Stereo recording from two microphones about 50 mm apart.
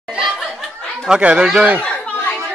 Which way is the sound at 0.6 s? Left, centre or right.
Centre.